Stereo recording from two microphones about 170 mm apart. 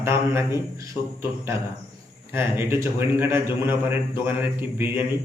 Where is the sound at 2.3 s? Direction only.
15° right (ahead or behind).